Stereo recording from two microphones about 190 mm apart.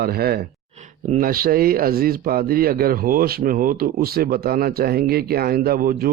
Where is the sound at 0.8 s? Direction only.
40° right (ahead or behind).